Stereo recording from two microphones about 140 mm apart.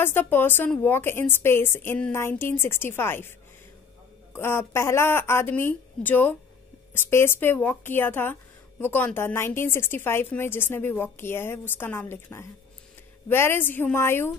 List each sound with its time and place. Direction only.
0.0 s speech: 15° left (ahead or behind)
4.4 s speech: 15° left (ahead or behind)